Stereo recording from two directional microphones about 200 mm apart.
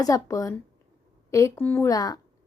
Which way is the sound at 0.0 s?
15° left (ahead or behind).